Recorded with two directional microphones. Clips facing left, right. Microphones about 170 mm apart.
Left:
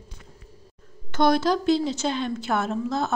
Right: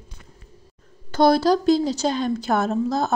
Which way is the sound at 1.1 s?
35° right (ahead or behind).